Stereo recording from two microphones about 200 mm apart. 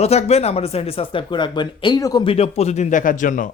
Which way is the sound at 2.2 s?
30° left (ahead or behind).